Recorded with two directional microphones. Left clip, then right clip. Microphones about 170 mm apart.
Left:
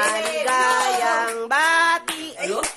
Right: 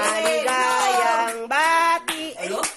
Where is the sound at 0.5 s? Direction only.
10° right (ahead or behind).